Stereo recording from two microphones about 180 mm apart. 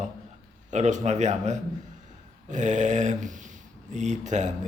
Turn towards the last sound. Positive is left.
turn(degrees=-40)  # may be behind; listen again after turning